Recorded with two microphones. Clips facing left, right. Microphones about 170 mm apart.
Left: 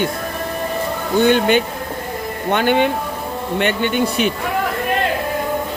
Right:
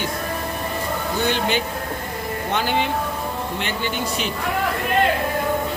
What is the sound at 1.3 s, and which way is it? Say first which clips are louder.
Speech: left 7 dB; 55° left (ahead or behind).